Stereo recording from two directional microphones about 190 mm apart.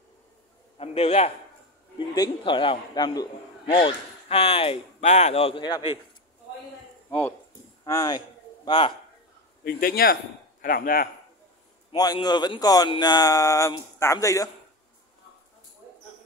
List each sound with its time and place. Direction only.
0.7 s a man's voice: 30° left (ahead or behind)
7.1 s a man's voice: 10° left (ahead or behind); by 8.9 s 25° left (ahead or behind)
9.7 s speech: 50° left (ahead or behind)
11.9 s a man's voice: 20° left (ahead or behind)